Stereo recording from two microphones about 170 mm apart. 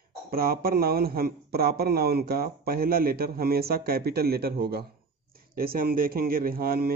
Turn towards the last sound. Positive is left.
turn(degrees=-60)  # may be behind; listen again after turning